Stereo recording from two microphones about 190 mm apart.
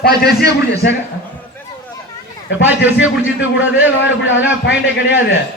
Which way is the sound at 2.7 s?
10° right (ahead or behind).